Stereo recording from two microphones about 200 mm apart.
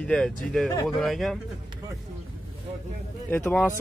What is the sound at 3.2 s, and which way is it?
Speech, 10° left (ahead or behind).